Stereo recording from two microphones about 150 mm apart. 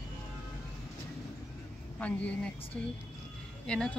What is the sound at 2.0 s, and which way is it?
Speech, 10° left (ahead or behind).